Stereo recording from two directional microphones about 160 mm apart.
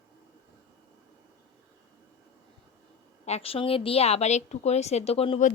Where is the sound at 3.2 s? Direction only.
40° left (ahead or behind).